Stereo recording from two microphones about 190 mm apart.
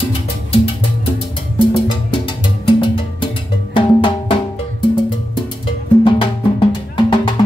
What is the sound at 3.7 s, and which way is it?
Music, 25° left (ahead or behind).